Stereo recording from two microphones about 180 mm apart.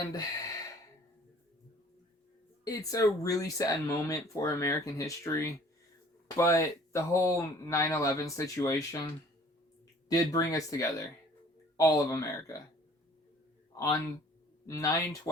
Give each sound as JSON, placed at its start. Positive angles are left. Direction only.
{"t": 0.0, "sound": "speech", "side_deg": 20}
{"t": 2.6, "sound": "speech", "side_deg": 20}
{"t": 10.1, "sound": "speech", "side_deg": 20}
{"t": 13.7, "sound": "speech", "side_deg": 20}